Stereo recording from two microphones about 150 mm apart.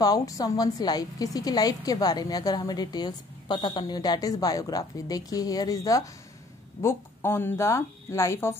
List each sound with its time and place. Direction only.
0.0 s a woman's voice: 25° left (ahead or behind)